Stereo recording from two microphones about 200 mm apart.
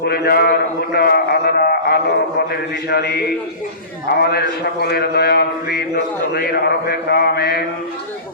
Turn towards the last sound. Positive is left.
turn(degrees=50)  # may be behind; listen again after turning